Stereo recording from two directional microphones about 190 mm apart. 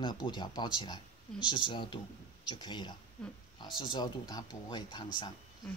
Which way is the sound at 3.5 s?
25° left (ahead or behind).